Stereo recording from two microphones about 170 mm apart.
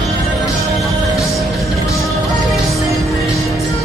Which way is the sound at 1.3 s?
Centre (ahead or behind).